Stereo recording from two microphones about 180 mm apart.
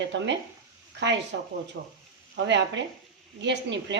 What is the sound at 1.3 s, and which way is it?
Speech, 80° right.